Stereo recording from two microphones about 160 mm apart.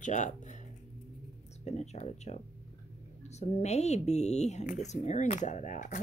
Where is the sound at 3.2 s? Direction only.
45° left (ahead or behind).